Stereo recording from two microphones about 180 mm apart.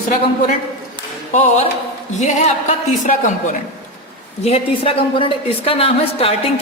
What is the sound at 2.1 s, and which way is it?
A woman's voice, 40° left (ahead or behind).